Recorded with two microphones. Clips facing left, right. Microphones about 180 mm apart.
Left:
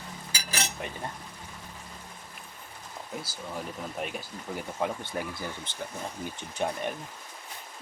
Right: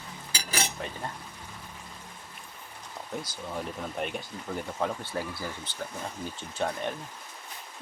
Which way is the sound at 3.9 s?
5° left (ahead or behind).